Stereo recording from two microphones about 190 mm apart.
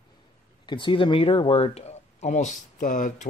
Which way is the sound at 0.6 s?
25° left (ahead or behind).